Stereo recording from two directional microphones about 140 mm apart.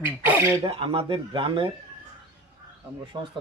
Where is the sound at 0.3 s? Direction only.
15° right (ahead or behind).